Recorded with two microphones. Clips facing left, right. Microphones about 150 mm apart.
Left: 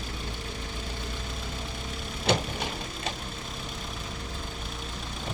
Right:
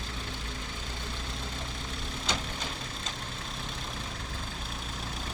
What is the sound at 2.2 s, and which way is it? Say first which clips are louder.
Vehicle: left 9 dB; 60° left (ahead or behind).